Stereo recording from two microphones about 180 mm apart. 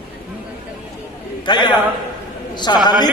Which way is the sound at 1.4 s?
25° left (ahead or behind).